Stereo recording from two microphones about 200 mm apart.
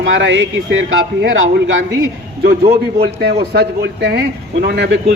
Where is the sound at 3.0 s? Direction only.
55° right (ahead or behind).